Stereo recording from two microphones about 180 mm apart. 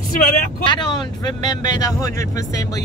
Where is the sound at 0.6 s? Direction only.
25° left (ahead or behind).